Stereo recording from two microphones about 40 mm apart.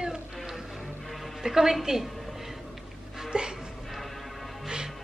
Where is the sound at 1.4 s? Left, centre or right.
Centre.